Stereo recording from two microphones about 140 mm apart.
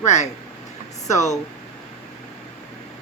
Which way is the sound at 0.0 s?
55° left (ahead or behind).